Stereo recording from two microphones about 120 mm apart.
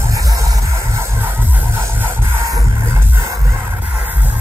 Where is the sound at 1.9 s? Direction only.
25° right (ahead or behind).